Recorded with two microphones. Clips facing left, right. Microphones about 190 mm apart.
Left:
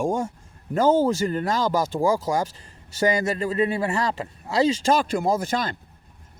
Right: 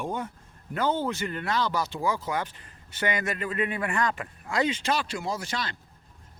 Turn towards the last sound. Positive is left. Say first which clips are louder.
# left 9 dB
turn(degrees=50)  # may be behind; listen again after turning